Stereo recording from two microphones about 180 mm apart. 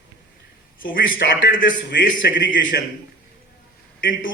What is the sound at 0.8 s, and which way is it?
Speech, 50° left (ahead or behind).